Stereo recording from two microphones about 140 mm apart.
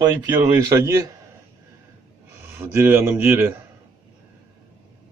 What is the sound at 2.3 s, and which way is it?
Speech, 15° right (ahead or behind).